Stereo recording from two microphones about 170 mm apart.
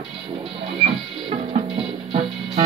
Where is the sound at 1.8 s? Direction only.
35° right (ahead or behind).